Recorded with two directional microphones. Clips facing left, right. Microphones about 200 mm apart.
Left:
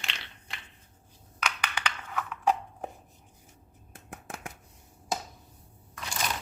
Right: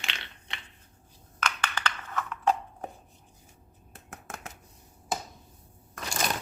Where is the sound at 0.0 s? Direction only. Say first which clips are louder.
Right 1 dB; centre (ahead or behind).